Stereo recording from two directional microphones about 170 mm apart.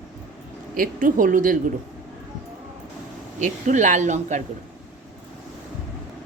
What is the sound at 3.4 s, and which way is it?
A woman's voice, 45° right (ahead or behind).